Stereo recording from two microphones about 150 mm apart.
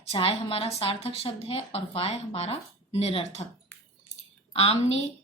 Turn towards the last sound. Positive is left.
turn(degrees=45)  # may be behind; listen again after turning